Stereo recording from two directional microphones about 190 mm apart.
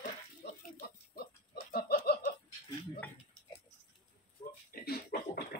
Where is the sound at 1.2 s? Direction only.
50° left (ahead or behind).